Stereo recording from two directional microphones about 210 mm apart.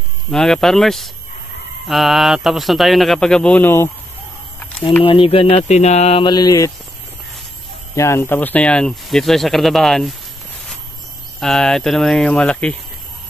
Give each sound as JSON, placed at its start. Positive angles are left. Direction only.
{"t": 0.3, "sound": "speech", "side_deg": 0}
{"t": 5.0, "sound": "speech", "side_deg": 25}
{"t": 7.9, "sound": "speech", "side_deg": 15}
{"t": 11.3, "sound": "speech", "side_deg": 0}